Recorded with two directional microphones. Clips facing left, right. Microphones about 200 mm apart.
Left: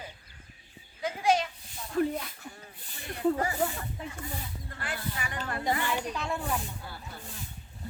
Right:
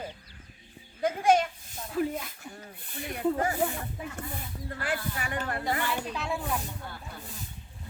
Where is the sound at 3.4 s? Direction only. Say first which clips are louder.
Right 2 dB; 55° right (ahead or behind).